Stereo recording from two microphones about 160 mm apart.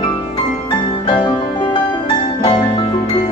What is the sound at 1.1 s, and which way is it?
Music, 30° left (ahead or behind).